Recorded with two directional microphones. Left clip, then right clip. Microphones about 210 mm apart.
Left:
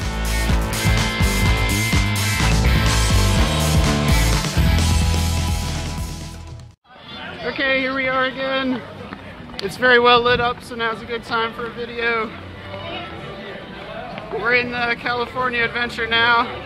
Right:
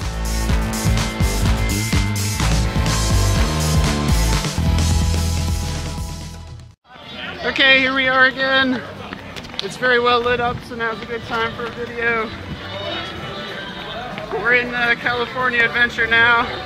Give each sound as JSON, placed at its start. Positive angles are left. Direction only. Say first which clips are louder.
{"t": 0.4, "sound": "music", "louder": "even", "side_deg": 0}
{"t": 7.4, "sound": "speech", "louder": "right 6 dB", "side_deg": -20}
{"t": 9.8, "sound": "speech", "louder": "left 3 dB", "side_deg": 40}
{"t": 10.4, "sound": "speech", "louder": "even", "side_deg": 10}
{"t": 14.4, "sound": "speech", "louder": "right 2 dB", "side_deg": 10}